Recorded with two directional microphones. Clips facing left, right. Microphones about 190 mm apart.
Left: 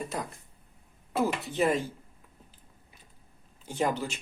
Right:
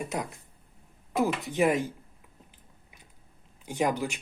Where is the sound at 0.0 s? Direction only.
15° right (ahead or behind).